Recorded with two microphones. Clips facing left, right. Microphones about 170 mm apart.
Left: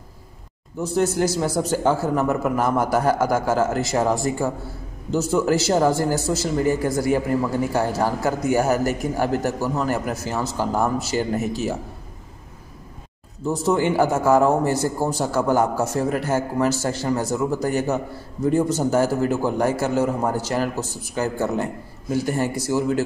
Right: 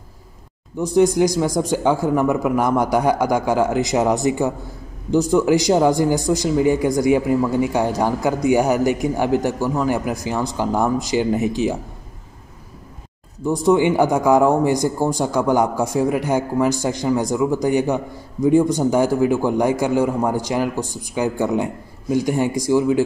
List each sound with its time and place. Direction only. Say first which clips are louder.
0.8 s a man's voice: right 5 dB; 15° right (ahead or behind)
13.5 s a man's voice: right 4 dB; 15° right (ahead or behind)